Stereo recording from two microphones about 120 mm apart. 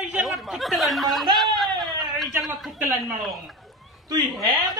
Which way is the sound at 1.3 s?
Centre (ahead or behind).